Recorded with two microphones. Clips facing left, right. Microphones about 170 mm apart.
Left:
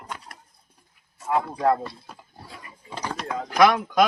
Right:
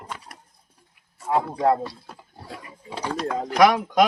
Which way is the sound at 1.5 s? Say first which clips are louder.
Right 1 dB; 20° right (ahead or behind).